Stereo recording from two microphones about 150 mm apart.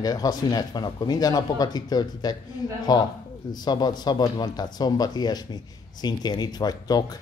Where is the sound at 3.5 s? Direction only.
25° left (ahead or behind).